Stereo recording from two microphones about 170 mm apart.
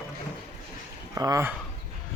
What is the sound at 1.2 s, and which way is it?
Speech, 20° right (ahead or behind).